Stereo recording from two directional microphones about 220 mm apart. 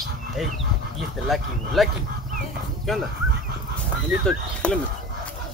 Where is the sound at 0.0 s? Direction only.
Centre (ahead or behind).